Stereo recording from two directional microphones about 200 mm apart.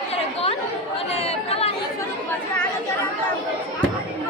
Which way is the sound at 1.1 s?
30° left (ahead or behind).